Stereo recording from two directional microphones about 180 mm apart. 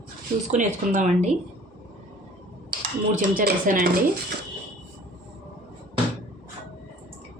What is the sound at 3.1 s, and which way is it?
Speech, 45° right (ahead or behind).